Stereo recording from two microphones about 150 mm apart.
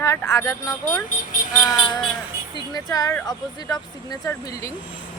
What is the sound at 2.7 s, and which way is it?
Speech, 25° left (ahead or behind).